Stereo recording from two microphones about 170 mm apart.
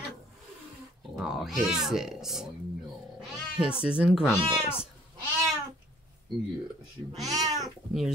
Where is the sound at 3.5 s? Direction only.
5° right (ahead or behind).